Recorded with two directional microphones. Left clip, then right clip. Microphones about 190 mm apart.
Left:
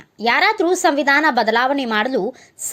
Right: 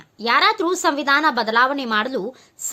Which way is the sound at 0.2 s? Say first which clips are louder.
Left 1 dB; 10° left (ahead or behind).